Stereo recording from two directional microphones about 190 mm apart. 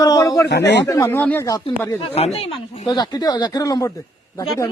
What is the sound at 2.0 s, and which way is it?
Speech, 30° left (ahead or behind).